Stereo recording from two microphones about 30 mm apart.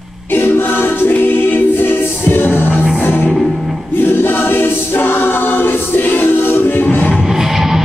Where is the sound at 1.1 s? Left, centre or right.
Left.